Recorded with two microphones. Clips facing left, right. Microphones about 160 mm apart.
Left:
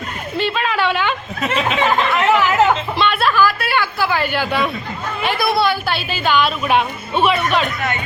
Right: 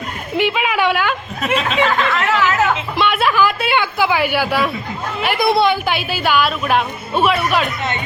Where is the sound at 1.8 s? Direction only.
20° left (ahead or behind).